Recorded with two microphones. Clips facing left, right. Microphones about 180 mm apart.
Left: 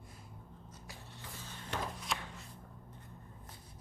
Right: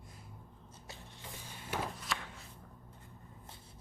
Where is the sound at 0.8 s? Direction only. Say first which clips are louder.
Right 2 dB; 15° right (ahead or behind).